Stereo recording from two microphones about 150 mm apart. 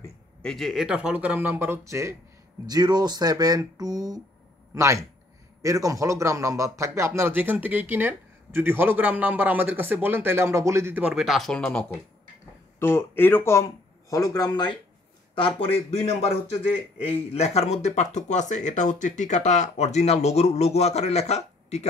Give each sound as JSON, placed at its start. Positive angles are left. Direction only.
{"t": 0.4, "sound": "a man's voice", "side_deg": 5}